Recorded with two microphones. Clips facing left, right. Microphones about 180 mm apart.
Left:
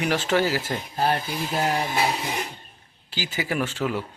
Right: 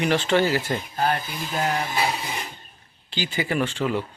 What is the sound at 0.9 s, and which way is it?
Speech, 30° left (ahead or behind).